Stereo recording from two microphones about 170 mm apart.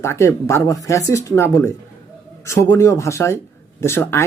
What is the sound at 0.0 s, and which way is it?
Speech, 15° left (ahead or behind).